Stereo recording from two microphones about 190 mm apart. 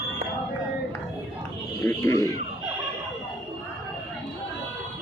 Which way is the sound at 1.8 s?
15° left (ahead or behind).